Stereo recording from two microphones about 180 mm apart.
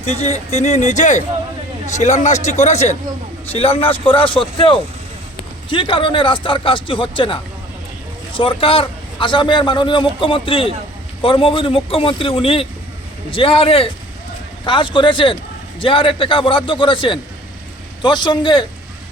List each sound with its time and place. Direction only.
0.0 s a man's voice: 35° left (ahead or behind)
5.6 s a man's voice: 30° left (ahead or behind)